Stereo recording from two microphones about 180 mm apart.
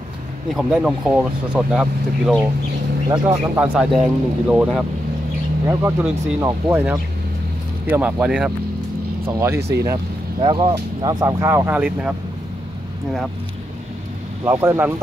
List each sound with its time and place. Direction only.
0.6 s speech: 5° right (ahead or behind)
3.1 s speech: 15° right (ahead or behind)
9.6 s speech: 70° right (ahead or behind)
10.4 s speech: 25° right (ahead or behind); by 12.1 s 10° right (ahead or behind)
14.4 s speech: 15° right (ahead or behind)